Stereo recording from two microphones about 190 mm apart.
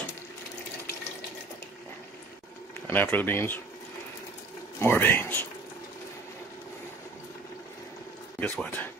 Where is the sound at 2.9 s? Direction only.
10° left (ahead or behind).